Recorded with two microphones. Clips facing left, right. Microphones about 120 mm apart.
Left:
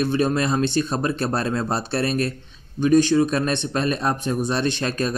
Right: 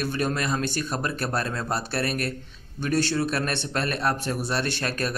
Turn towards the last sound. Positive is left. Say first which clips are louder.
# left 5 dB
turn(degrees=20)  # may be behind; listen again after turning